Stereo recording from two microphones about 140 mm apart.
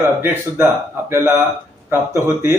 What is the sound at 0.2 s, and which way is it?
Speech, 20° right (ahead or behind).